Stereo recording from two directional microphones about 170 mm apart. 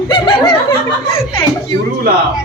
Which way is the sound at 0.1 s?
30° left (ahead or behind).